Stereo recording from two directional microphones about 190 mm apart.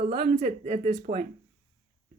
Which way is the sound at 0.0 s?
50° right (ahead or behind).